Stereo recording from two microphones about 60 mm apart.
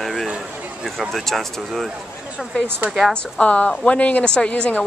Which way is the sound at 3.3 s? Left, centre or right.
Left.